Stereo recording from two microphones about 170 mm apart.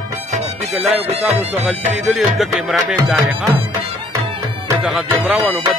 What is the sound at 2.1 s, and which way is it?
Music, centre (ahead or behind).